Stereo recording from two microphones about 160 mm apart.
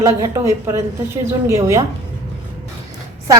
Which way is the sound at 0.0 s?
20° right (ahead or behind).